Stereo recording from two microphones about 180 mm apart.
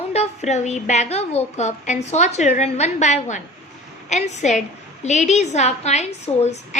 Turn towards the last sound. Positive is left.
turn(degrees=40)  # may be behind; listen again after turning